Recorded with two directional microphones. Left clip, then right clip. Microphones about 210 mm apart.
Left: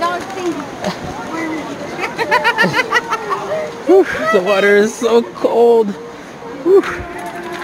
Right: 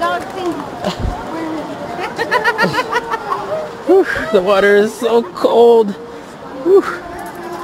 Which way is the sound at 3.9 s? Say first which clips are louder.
Left 1 dB; centre (ahead or behind).